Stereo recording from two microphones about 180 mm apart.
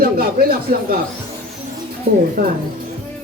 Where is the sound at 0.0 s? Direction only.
55° right (ahead or behind).